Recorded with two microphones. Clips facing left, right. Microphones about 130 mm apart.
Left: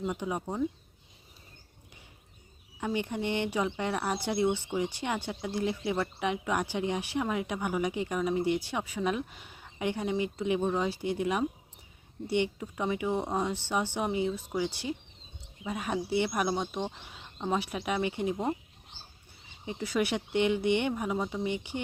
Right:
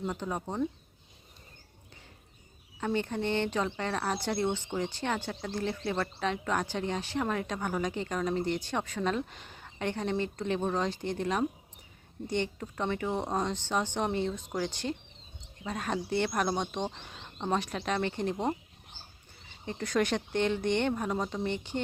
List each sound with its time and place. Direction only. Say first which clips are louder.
0.0 s speech: left 1 dB; 10° left (ahead or behind)
2.8 s speech: right 1 dB; 15° left (ahead or behind)
19.6 s speech: right 1 dB; 10° left (ahead or behind)